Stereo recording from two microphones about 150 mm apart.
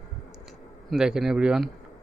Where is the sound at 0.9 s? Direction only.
5° right (ahead or behind).